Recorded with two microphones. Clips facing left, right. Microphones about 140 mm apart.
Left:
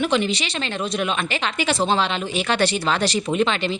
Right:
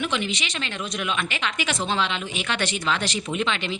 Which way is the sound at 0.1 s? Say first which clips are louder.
Left 6 dB; 35° left (ahead or behind).